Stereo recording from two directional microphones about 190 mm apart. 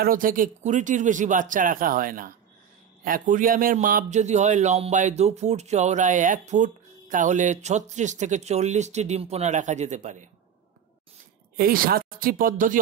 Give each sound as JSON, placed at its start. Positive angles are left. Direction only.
{"t": 0.0, "sound": "a man's voice", "side_deg": -45}
{"t": 11.5, "sound": "speech", "side_deg": -50}